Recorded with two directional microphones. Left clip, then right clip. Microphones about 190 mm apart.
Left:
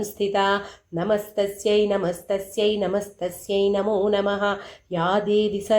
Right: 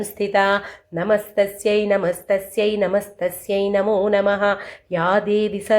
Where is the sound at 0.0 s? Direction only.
15° right (ahead or behind).